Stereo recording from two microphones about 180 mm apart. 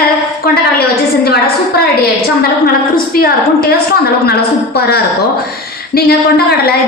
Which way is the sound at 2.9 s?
55° left (ahead or behind).